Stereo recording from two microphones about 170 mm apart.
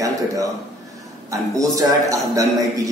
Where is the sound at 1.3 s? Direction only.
20° right (ahead or behind).